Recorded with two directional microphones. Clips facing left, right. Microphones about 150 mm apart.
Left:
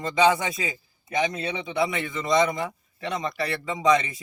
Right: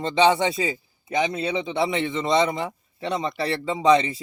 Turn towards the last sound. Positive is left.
turn(degrees=-30)  # may be behind; listen again after turning